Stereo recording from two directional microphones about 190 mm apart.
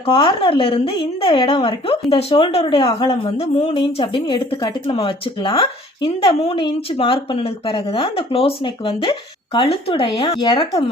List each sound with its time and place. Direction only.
0.0 s a woman's voice: 25° left (ahead or behind)